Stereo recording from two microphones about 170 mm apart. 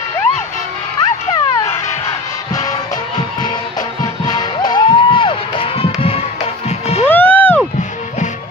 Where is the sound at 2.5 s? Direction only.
20° left (ahead or behind); by 7.0 s 40° left (ahead or behind).